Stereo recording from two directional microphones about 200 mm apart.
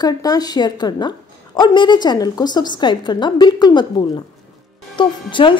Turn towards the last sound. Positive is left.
turn(degrees=25)  # may be behind; listen again after turning